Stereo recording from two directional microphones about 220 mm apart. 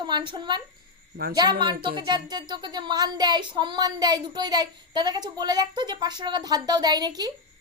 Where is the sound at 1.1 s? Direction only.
45° right (ahead or behind).